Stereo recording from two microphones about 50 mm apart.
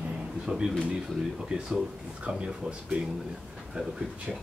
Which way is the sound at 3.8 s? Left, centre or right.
Right.